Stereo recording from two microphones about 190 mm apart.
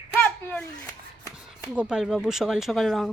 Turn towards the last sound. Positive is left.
turn(degrees=0)  # may be behind; listen again after turning